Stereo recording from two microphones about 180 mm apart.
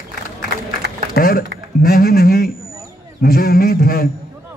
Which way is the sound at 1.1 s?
55° left (ahead or behind).